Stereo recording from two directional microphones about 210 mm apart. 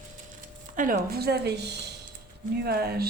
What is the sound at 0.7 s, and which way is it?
Speech, 40° right (ahead or behind).